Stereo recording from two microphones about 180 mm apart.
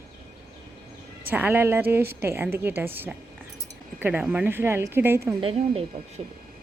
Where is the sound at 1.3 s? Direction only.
10° right (ahead or behind).